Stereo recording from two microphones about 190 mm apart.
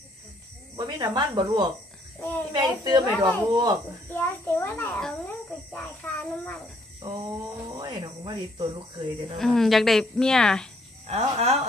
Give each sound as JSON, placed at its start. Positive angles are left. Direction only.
{"t": 0.7, "sound": "speech", "side_deg": -20}
{"t": 4.1, "sound": "a child's voice", "side_deg": 10}
{"t": 7.7, "sound": "speech", "side_deg": -20}
{"t": 9.4, "sound": "speech", "side_deg": 0}
{"t": 11.1, "sound": "speech", "side_deg": -35}